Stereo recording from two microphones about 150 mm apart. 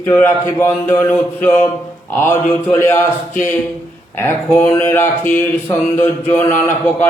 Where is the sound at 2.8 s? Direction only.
15° left (ahead or behind).